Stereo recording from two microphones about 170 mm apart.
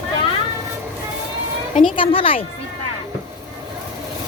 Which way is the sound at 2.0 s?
35° left (ahead or behind).